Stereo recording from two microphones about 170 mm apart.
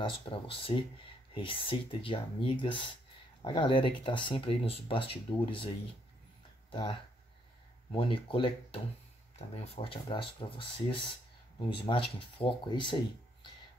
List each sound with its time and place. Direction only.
0.0 s speech: 30° left (ahead or behind)
6.7 s speech: 30° left (ahead or behind)